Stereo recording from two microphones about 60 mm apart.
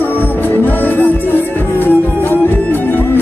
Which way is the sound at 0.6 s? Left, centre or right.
Left.